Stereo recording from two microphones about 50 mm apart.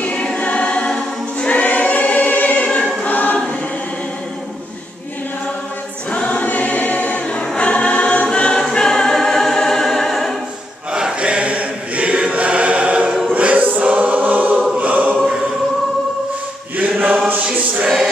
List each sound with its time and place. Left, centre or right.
0.0 s choir: left
1.5 s choir: left
6.1 s choir: left
8.7 s music: centre
10.9 s choir: centre
16.7 s choir: right